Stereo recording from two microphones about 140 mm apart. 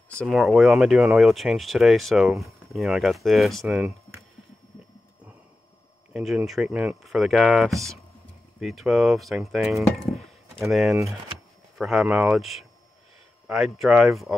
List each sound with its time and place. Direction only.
0.3 s speech: centre (ahead or behind)
6.1 s speech: 5° right (ahead or behind)